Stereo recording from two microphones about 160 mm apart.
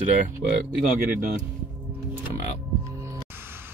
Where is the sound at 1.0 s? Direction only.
55° right (ahead or behind).